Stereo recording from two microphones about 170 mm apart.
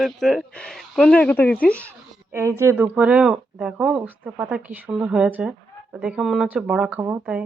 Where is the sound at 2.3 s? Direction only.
15° right (ahead or behind).